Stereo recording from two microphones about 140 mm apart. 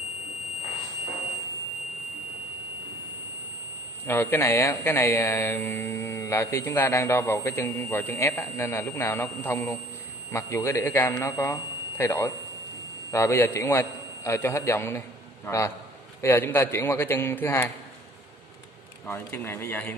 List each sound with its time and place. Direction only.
4.0 s a man's voice: 15° left (ahead or behind)
19.0 s a man's voice: 15° left (ahead or behind)